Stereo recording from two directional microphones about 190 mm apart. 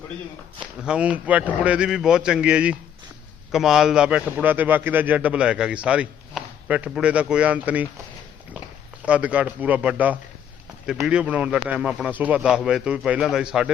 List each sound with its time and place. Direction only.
0.8 s a man's voice: 5° right (ahead or behind)
9.0 s a man's voice: 5° right (ahead or behind)